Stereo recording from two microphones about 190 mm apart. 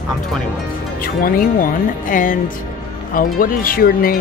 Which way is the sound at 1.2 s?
45° left (ahead or behind).